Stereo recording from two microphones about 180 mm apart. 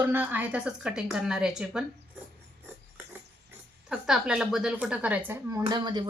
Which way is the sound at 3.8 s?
5° right (ahead or behind).